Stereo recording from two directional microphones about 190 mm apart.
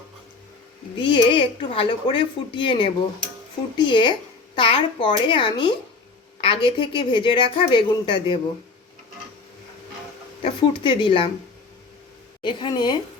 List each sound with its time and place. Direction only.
0.9 s speech: 25° left (ahead or behind)
10.4 s speech: 25° left (ahead or behind)
12.4 s speech: 25° left (ahead or behind)